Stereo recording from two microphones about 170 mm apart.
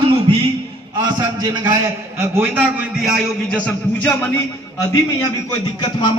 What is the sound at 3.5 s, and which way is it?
Speech, 10° left (ahead or behind).